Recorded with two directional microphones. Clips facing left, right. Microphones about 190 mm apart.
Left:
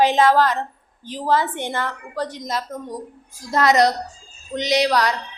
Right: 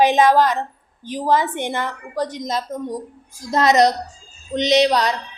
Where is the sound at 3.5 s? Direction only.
20° right (ahead or behind).